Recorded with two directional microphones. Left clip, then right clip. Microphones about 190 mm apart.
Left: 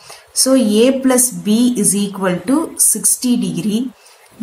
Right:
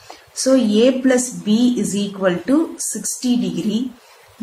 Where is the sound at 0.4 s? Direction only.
50° left (ahead or behind).